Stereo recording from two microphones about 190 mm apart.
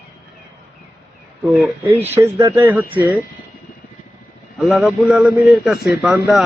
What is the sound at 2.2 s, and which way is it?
Speech, 15° right (ahead or behind).